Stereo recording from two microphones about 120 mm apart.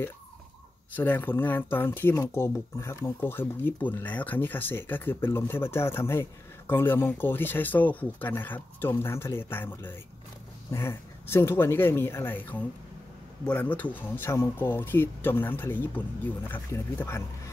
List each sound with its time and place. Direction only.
0.9 s speech: 15° left (ahead or behind)